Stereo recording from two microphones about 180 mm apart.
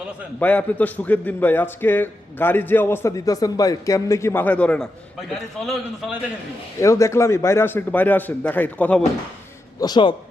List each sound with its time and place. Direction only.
0.3 s a man's voice: 10° left (ahead or behind)
6.7 s a man's voice: 15° left (ahead or behind)
9.8 s a man's voice: 25° left (ahead or behind)